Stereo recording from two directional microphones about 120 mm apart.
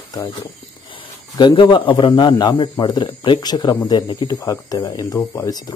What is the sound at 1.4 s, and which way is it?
A man's voice, 40° left (ahead or behind).